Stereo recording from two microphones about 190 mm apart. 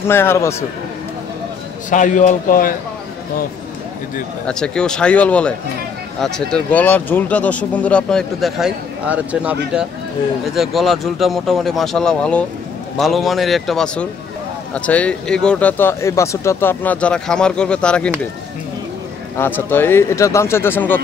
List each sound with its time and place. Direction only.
0.1 s speech: 10° left (ahead or behind)
1.9 s a man's voice: 45° left (ahead or behind)
4.5 s speech: 5° left (ahead or behind)
19.3 s speech: 10° left (ahead or behind)